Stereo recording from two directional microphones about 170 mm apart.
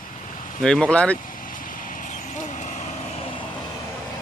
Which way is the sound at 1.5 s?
55° left (ahead or behind).